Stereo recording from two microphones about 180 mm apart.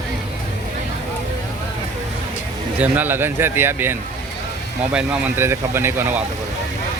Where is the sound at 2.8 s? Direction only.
10° right (ahead or behind).